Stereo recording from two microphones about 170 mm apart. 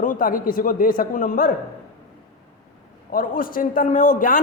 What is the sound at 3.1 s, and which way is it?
A man's voice, 55° left (ahead or behind).